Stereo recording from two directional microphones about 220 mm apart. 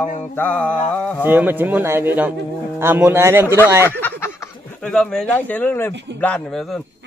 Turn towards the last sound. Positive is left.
turn(degrees=5)  # may be behind; listen again after turning